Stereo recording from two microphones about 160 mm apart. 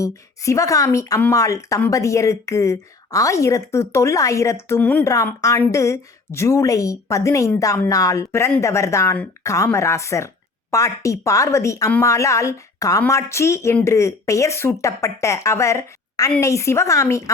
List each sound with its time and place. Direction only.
0.0 s a woman's voice: 20° left (ahead or behind)
5.1 s a woman's voice: 20° left (ahead or behind)